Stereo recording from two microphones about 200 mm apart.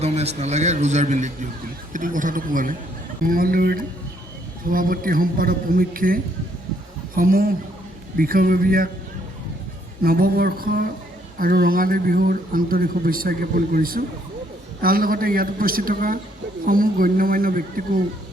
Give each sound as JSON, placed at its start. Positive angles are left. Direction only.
{"t": 0.0, "sound": "a man's voice", "side_deg": -30}
{"t": 7.2, "sound": "speech", "side_deg": -45}
{"t": 10.0, "sound": "speech", "side_deg": -50}